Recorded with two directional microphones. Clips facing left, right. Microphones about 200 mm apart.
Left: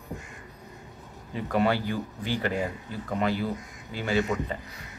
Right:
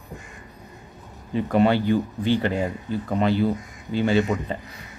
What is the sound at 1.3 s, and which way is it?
Speech, 25° right (ahead or behind).